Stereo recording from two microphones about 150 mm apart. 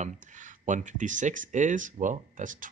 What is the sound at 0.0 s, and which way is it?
Speech, 55° right (ahead or behind).